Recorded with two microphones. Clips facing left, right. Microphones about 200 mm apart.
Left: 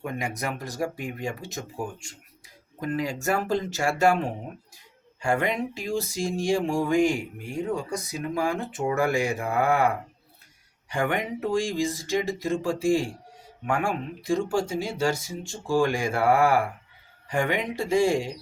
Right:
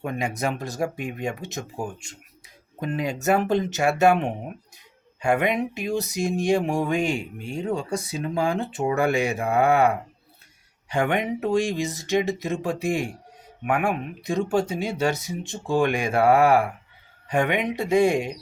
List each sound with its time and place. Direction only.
0.0 s speech: 25° right (ahead or behind)